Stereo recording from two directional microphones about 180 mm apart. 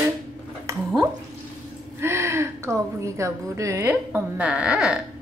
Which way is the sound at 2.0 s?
15° right (ahead or behind).